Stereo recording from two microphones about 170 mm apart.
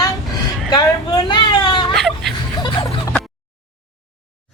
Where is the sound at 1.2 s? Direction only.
25° left (ahead or behind).